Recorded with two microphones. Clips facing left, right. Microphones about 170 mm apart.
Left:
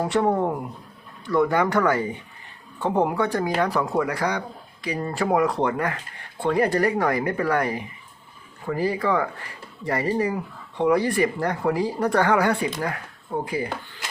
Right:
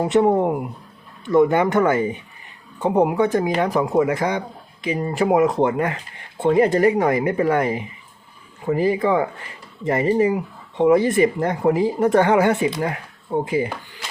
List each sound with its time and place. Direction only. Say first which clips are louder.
0.0 s speech: right 5 dB; 20° right (ahead or behind)